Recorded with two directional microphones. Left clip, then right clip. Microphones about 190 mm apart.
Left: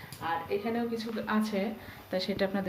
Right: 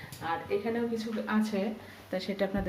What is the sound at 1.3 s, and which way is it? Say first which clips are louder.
Speech: left 1 dB; 5° left (ahead or behind).